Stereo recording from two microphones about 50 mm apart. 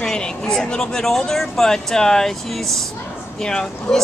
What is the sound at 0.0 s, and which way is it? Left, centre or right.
Speech, centre.